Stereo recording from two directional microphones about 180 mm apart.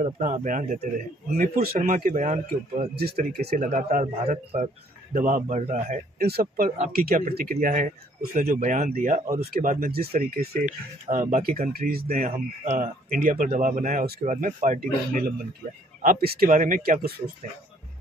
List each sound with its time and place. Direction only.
0.0 s speech: 40° right (ahead or behind)
2.8 s speech: 60° right (ahead or behind)
4.2 s a man's voice: 35° right (ahead or behind)
5.1 s speech: 45° right (ahead or behind)
6.2 s speech: 55° right (ahead or behind)
11.1 s speech: 40° right (ahead or behind)
12.3 s speech: 40° right (ahead or behind)
16.0 s speech: 50° right (ahead or behind)